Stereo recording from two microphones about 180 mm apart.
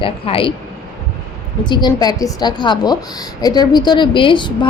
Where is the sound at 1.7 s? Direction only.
25° left (ahead or behind).